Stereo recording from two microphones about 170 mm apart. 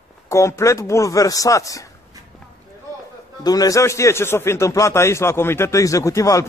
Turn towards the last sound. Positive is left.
turn(degrees=20)  # may be behind; listen again after turning